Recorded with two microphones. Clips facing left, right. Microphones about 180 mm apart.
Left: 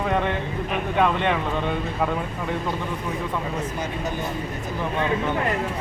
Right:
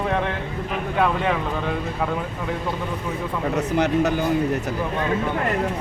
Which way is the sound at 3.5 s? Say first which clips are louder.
Right 8 dB; 75° right (ahead or behind).